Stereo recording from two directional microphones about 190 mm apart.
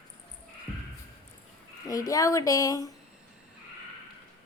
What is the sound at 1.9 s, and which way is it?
A woman's voice, 20° left (ahead or behind).